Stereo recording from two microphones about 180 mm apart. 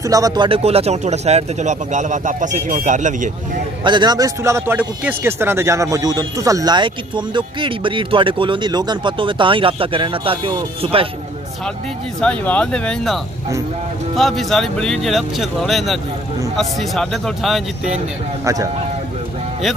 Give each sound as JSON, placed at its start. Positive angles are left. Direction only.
{"t": 0.0, "sound": "speech", "side_deg": -20}
{"t": 3.8, "sound": "speech", "side_deg": -25}
{"t": 12.2, "sound": "speech", "side_deg": 5}
{"t": 18.4, "sound": "speech", "side_deg": -20}